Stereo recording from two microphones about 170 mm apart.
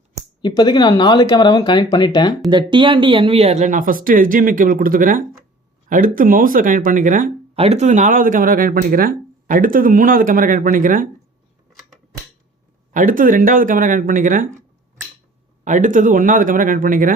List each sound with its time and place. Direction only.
0.4 s speech: 25° left (ahead or behind)
2.5 s speech: 25° right (ahead or behind); by 7.3 s 50° right (ahead or behind)
7.5 s speech: 35° right (ahead or behind)
12.9 s speech: 50° right (ahead or behind)
15.6 s speech: 50° right (ahead or behind)